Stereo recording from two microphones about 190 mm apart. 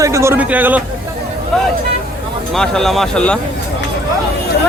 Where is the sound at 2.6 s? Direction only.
Centre (ahead or behind).